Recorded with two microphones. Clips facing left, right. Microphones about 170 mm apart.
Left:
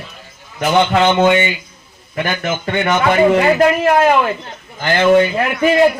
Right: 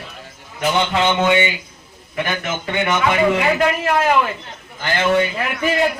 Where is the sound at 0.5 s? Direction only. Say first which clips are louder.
Left 5 dB; 45° left (ahead or behind).